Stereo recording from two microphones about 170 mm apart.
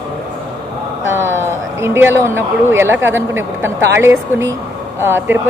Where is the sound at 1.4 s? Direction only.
15° right (ahead or behind).